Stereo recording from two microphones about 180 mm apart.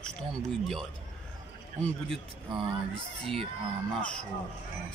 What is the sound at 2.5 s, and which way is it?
Speech, 25° right (ahead or behind).